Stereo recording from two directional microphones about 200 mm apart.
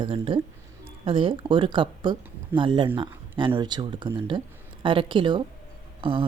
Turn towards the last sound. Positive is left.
turn(degrees=-25)  # may be behind; listen again after turning